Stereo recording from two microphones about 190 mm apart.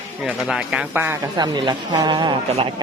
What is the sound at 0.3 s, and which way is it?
Speech, 5° right (ahead or behind).